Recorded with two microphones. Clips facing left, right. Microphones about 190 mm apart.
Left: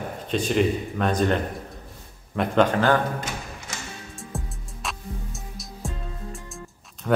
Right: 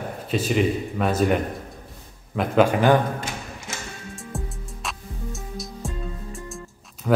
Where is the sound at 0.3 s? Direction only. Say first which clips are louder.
Even; 5° right (ahead or behind).